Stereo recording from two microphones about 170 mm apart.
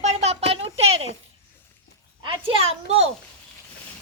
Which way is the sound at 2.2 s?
30° right (ahead or behind).